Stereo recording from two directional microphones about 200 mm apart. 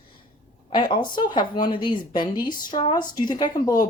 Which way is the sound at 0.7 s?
25° left (ahead or behind).